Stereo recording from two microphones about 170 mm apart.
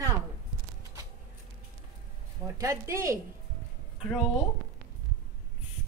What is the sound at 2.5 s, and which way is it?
Speech, 20° right (ahead or behind).